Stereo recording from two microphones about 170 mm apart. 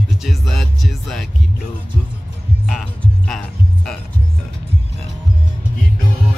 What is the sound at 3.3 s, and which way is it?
Music, 5° left (ahead or behind).